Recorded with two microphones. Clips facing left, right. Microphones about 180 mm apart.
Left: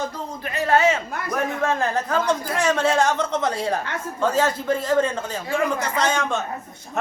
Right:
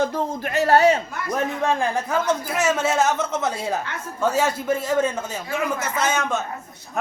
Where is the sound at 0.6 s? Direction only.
40° right (ahead or behind).